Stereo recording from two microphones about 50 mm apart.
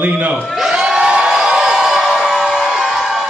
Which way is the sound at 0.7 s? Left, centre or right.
Centre.